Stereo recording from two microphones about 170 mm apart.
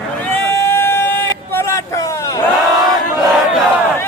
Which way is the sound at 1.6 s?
15° left (ahead or behind).